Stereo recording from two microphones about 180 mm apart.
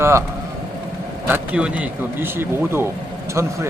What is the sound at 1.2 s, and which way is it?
Speech, 10° right (ahead or behind).